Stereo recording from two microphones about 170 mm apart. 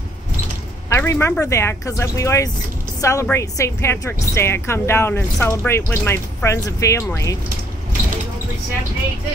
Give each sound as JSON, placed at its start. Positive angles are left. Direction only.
{"t": 0.8, "sound": "a woman's voice", "side_deg": 15}